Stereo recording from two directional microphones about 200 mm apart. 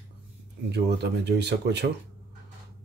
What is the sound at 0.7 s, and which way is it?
Speech, 55° right (ahead or behind).